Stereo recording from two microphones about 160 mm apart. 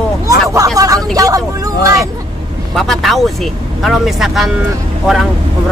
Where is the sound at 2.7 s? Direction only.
Centre (ahead or behind).